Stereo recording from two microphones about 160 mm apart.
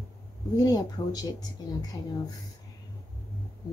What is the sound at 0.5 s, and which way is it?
Speech, 20° left (ahead or behind).